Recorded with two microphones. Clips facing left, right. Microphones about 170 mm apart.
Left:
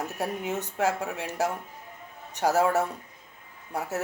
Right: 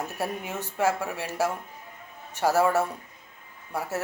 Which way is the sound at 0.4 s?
20° left (ahead or behind).